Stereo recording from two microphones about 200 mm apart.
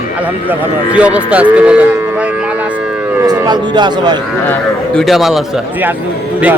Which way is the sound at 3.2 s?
20° right (ahead or behind).